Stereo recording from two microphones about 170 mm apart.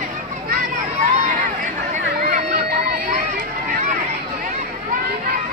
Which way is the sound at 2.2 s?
60° right (ahead or behind).